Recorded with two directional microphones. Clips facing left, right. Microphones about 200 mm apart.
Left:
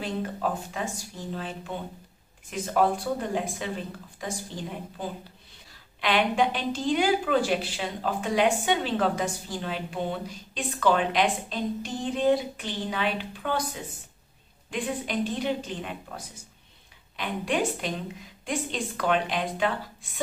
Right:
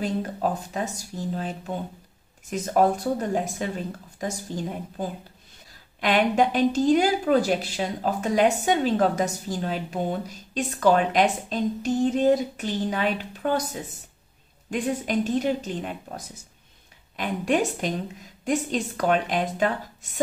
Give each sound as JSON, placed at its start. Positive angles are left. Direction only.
{"t": 0.0, "sound": "a woman's voice", "side_deg": -40}
{"t": 2.5, "sound": "a woman's voice", "side_deg": -40}
{"t": 5.9, "sound": "a woman's voice", "side_deg": -45}
{"t": 17.2, "sound": "a woman's voice", "side_deg": -40}